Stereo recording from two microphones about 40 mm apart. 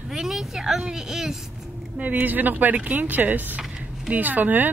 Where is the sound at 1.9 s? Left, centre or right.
Right.